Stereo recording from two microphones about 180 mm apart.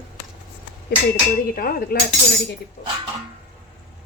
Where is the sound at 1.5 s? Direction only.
55° left (ahead or behind).